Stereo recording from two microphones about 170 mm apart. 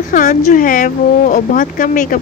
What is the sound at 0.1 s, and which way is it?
Speech, 45° left (ahead or behind).